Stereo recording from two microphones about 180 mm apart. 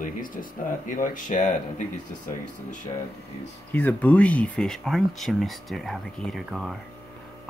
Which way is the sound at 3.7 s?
10° left (ahead or behind).